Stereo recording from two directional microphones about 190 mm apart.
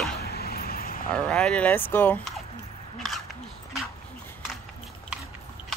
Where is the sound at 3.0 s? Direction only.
Centre (ahead or behind).